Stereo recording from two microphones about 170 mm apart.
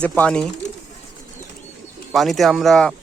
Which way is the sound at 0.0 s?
5° left (ahead or behind).